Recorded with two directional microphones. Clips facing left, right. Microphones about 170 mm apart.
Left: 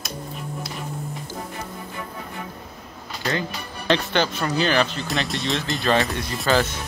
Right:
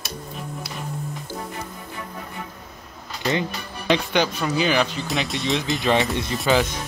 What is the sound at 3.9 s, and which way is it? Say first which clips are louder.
Speech: right 1 dB; 10° right (ahead or behind).